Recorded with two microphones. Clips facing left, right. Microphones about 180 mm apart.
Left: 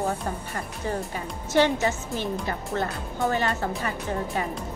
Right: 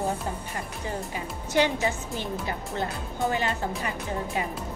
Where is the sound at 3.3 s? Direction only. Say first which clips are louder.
Left 2 dB; 15° right (ahead or behind).